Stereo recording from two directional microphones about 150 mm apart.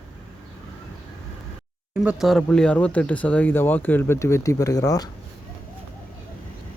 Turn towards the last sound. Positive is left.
turn(degrees=25)  # may be behind; listen again after turning